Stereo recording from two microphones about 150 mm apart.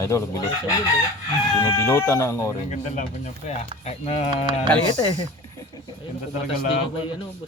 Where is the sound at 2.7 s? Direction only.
50° left (ahead or behind).